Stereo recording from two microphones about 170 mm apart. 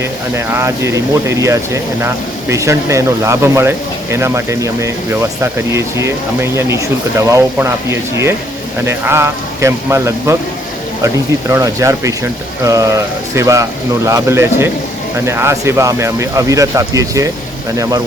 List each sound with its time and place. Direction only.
0.0 s speech: 15° right (ahead or behind)